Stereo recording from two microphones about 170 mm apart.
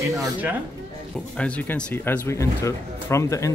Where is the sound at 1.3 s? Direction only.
5° left (ahead or behind).